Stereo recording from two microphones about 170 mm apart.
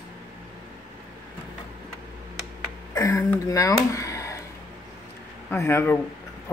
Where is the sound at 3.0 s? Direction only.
15° left (ahead or behind).